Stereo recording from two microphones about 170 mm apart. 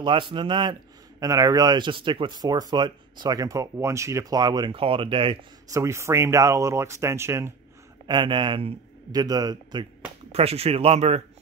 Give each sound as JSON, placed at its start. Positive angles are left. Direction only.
{"t": 0.0, "sound": "speech", "side_deg": -30}
{"t": 5.7, "sound": "speech", "side_deg": -15}
{"t": 8.1, "sound": "speech", "side_deg": -30}
{"t": 10.3, "sound": "speech", "side_deg": -35}